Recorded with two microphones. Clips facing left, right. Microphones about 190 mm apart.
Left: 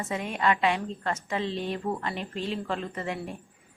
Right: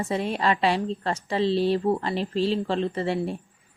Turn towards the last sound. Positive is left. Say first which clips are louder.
# right 7 dB
turn(degrees=-30)  # may be behind; listen again after turning